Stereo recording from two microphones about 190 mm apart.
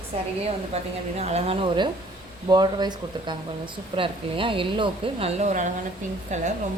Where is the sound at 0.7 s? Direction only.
30° right (ahead or behind).